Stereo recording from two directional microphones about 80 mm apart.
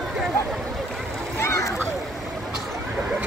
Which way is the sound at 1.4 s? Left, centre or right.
Left.